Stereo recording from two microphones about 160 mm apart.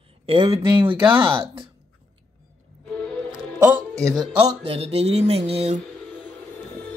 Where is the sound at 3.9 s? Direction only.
5° left (ahead or behind).